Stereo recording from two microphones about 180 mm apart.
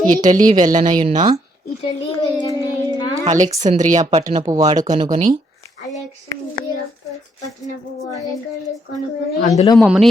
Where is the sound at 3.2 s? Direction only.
40° right (ahead or behind).